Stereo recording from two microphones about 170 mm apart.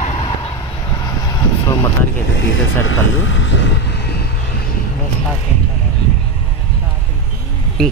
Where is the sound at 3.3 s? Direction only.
90° left.